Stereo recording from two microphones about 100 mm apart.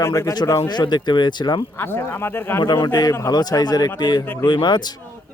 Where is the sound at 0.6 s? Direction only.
45° left (ahead or behind).